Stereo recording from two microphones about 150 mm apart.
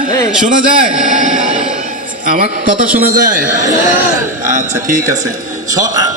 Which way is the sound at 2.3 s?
70° right (ahead or behind).